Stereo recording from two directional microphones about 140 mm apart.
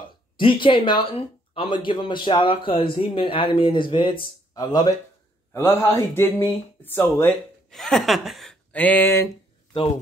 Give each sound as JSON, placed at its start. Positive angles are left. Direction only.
{"t": 0.4, "sound": "speech", "side_deg": 35}
{"t": 5.5, "sound": "speech", "side_deg": 15}
{"t": 7.7, "sound": "chuckle", "side_deg": 5}
{"t": 8.7, "sound": "speech", "side_deg": 10}